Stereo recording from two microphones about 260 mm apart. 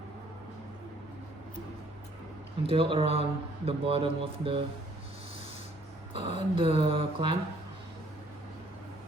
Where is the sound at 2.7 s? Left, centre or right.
Right.